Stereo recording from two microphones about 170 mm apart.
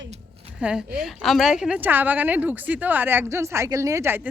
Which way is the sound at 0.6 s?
5° right (ahead or behind).